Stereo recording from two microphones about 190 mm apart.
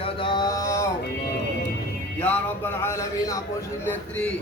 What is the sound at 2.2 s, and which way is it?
Speech, 10° left (ahead or behind).